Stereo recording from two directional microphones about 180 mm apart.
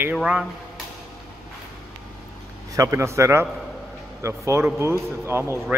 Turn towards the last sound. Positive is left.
turn(degrees=-15)  # may be behind; listen again after turning